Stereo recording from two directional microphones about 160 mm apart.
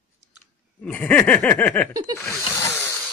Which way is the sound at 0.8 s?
10° left (ahead or behind).